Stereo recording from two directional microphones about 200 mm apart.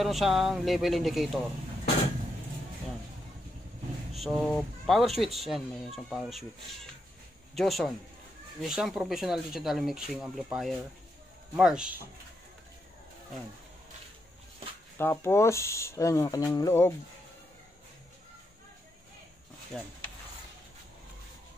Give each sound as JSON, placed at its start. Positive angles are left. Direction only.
{"t": 0.0, "sound": "speech", "side_deg": 0}
{"t": 4.2, "sound": "speech", "side_deg": 0}
{"t": 7.5, "sound": "speech", "side_deg": 0}
{"t": 15.0, "sound": "speech", "side_deg": 10}
{"t": 19.7, "sound": "speech", "side_deg": 5}